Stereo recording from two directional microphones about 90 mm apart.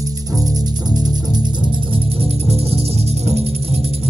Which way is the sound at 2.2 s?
90° right.